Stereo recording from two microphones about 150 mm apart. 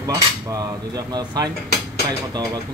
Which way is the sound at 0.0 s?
25° right (ahead or behind).